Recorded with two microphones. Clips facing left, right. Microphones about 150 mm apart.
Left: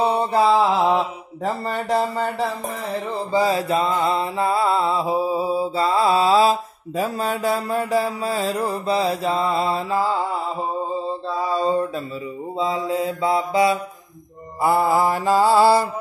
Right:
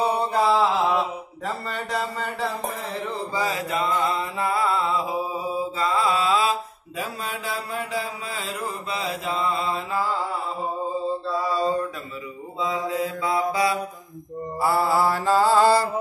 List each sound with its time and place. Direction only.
0.0 s mantra: 25° left (ahead or behind)
3.3 s mantra: 30° left (ahead or behind)
12.5 s mantra: 30° left (ahead or behind); by 15.9 s 15° left (ahead or behind)